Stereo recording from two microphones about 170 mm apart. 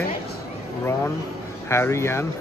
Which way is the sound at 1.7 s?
15° left (ahead or behind).